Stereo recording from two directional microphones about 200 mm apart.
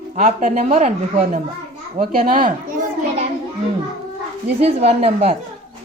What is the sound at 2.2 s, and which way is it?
Speech, 40° right (ahead or behind).